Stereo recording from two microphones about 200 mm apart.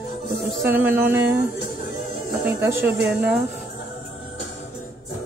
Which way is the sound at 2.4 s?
10° right (ahead or behind).